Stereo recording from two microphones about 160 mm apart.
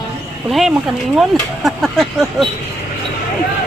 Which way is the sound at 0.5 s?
Centre (ahead or behind).